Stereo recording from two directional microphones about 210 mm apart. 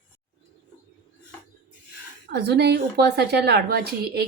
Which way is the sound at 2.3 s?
50° right (ahead or behind).